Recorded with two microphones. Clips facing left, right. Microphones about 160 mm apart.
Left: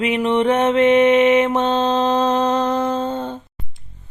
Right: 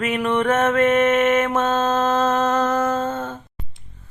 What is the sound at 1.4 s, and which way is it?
Mantra, 15° left (ahead or behind).